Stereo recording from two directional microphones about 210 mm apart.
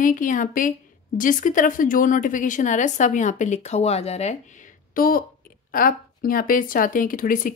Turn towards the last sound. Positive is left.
turn(degrees=40)  # may be behind; listen again after turning